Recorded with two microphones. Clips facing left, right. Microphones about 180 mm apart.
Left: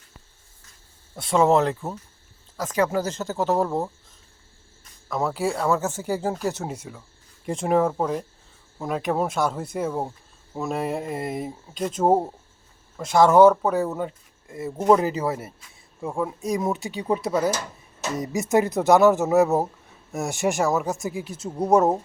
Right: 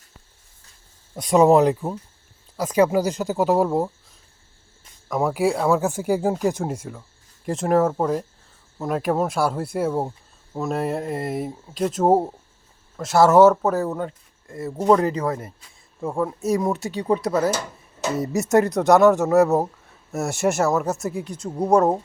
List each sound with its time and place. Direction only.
1.1 s speech: 20° right (ahead or behind); by 15.5 s 10° left (ahead or behind)
16.0 s speech: centre (ahead or behind)